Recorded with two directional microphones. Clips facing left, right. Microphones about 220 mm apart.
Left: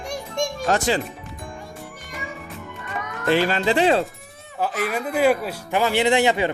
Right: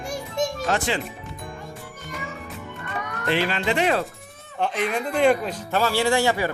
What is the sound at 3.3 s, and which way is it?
Speech, 40° left (ahead or behind).